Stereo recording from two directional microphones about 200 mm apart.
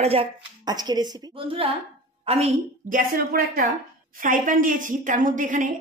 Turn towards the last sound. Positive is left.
turn(degrees=-40)  # may be behind; listen again after turning